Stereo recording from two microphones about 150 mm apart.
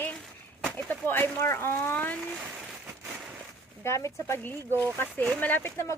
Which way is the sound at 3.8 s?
20° left (ahead or behind).